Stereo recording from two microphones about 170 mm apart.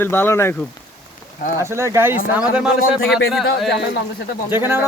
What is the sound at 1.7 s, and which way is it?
A man's voice, 15° right (ahead or behind).